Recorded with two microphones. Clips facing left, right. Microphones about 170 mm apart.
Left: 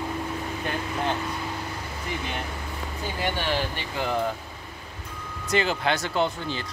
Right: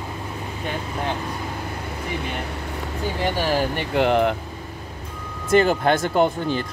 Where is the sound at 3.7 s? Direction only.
70° right (ahead or behind).